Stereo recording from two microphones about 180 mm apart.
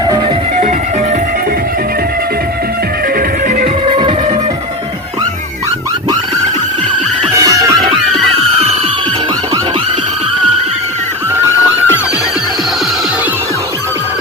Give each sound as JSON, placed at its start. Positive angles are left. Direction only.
{"t": 0.0, "sound": "music", "side_deg": -25}
{"t": 0.5, "sound": "music", "side_deg": -40}
{"t": 3.2, "sound": "music", "side_deg": -45}
{"t": 3.8, "sound": "music", "side_deg": -30}
{"t": 7.3, "sound": "music", "side_deg": -20}
{"t": 11.3, "sound": "music", "side_deg": -10}